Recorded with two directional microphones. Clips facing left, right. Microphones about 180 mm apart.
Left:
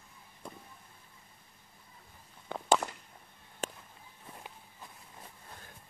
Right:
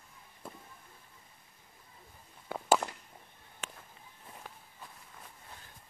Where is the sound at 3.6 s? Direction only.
40° left (ahead or behind).